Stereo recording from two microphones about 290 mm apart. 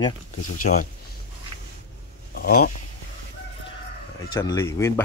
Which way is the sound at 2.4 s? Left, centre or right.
Left.